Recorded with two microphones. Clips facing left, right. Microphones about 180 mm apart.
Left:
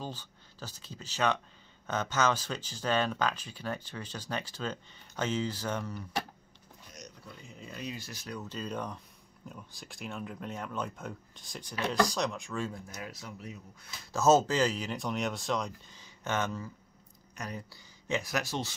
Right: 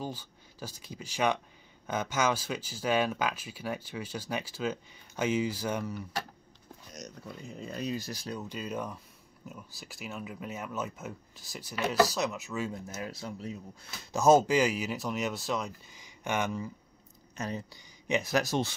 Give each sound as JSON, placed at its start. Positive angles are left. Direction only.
{"t": 0.0, "sound": "speech", "side_deg": -10}
{"t": 7.6, "sound": "speech", "side_deg": -40}
{"t": 8.4, "sound": "speech", "side_deg": -10}
{"t": 13.0, "sound": "speech", "side_deg": -30}
{"t": 14.1, "sound": "speech", "side_deg": -15}
{"t": 17.4, "sound": "speech", "side_deg": -25}
{"t": 18.3, "sound": "speech", "side_deg": -45}